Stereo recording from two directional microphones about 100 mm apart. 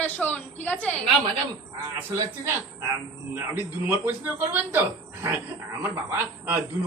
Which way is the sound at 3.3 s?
20° right (ahead or behind).